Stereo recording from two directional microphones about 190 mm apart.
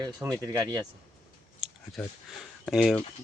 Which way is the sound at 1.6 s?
Centre (ahead or behind).